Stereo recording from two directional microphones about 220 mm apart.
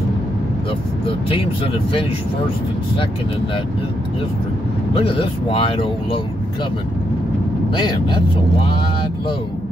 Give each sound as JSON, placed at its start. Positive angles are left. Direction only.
{"t": 1.0, "sound": "speech", "side_deg": 25}
{"t": 4.9, "sound": "speech", "side_deg": 25}